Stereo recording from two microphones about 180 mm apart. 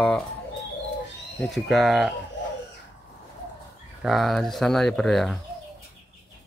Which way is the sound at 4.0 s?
Centre (ahead or behind).